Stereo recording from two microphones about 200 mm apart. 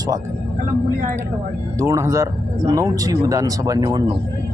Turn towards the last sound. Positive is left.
turn(degrees=-20)  # may be behind; listen again after turning